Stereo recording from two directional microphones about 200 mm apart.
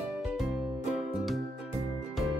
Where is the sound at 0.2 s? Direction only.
5° right (ahead or behind).